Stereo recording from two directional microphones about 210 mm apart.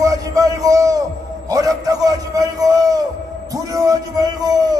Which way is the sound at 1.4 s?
15° right (ahead or behind).